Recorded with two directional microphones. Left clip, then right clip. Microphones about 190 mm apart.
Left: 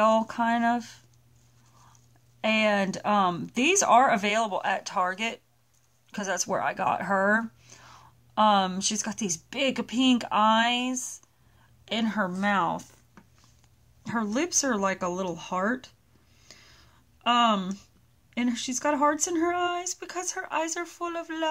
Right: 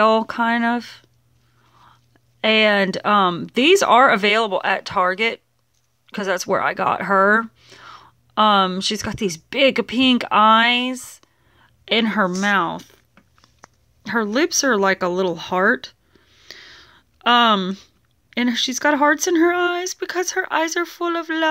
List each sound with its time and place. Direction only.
0.0 s speech: 20° right (ahead or behind)
2.4 s speech: 25° right (ahead or behind)
16.3 s a sound: 25° right (ahead or behind)
18.3 s speech: 25° right (ahead or behind)